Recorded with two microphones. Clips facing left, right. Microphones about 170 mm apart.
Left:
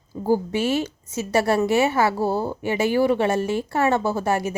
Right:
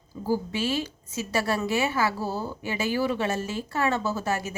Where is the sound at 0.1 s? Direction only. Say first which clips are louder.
Left 6 dB; 40° left (ahead or behind).